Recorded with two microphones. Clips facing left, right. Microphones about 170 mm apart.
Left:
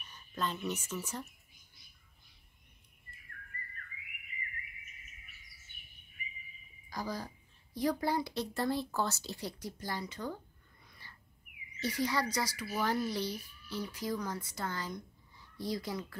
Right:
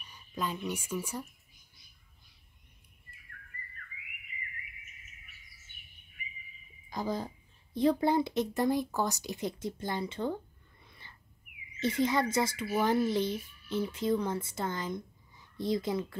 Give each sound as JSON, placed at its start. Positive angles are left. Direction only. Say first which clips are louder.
{"t": 0.0, "sound": "speech", "louder": "right 1 dB", "side_deg": -10}
{"t": 6.9, "sound": "speech", "louder": "right 5 dB", "side_deg": -25}
{"t": 10.9, "sound": "a sound", "louder": "right 1 dB", "side_deg": -20}
{"t": 11.8, "sound": "speech", "louder": "right 5 dB", "side_deg": -25}